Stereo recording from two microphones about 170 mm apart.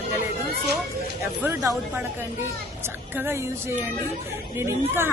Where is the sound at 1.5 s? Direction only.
15° right (ahead or behind).